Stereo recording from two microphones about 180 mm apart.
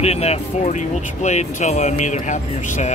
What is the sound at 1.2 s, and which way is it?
Speech, 40° left (ahead or behind).